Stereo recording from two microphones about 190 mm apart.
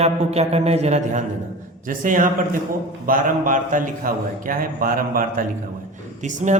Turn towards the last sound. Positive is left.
turn(degrees=-40)  # may be behind; listen again after turning